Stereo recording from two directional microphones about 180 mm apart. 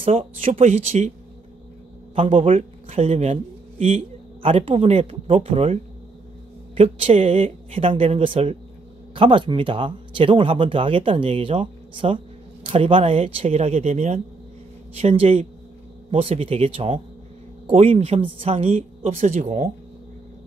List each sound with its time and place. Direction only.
0.0 s speech: 30° right (ahead or behind)
0.4 s speech: 40° right (ahead or behind)
2.1 s a man's voice: 30° right (ahead or behind)